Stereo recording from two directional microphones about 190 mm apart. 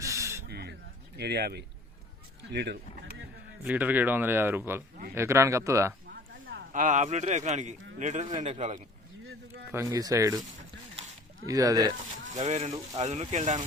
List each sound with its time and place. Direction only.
0.0 s snake: 15° right (ahead or behind)
0.4 s snake: 55° right (ahead or behind)
1.1 s speech: 60° right (ahead or behind)
3.7 s speech: 10° right (ahead or behind)
6.7 s speech: 40° right (ahead or behind)
9.7 s speech: 20° right (ahead or behind)
11.4 s speech: 20° right (ahead or behind)
12.3 s speech: 35° right (ahead or behind)